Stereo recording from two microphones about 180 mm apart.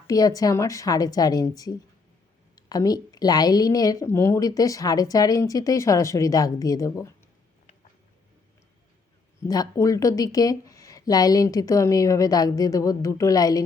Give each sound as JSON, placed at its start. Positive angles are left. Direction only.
{"t": 0.1, "sound": "a woman's voice", "side_deg": 20}
{"t": 9.4, "sound": "a woman's voice", "side_deg": 20}